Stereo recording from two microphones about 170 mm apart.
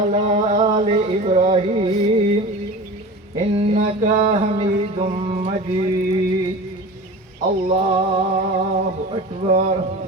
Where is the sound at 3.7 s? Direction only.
40° right (ahead or behind).